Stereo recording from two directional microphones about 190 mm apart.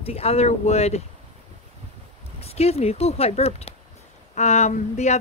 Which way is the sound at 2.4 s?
35° left (ahead or behind).